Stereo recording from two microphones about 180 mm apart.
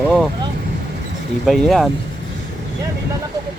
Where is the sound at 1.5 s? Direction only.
Centre (ahead or behind).